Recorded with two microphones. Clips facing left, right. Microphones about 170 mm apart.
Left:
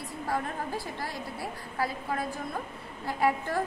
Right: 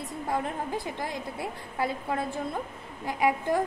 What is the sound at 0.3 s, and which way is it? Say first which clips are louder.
A woman's voice: right 2 dB; 20° right (ahead or behind).